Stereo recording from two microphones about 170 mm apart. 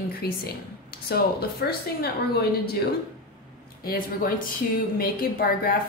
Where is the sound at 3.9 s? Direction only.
60° left (ahead or behind).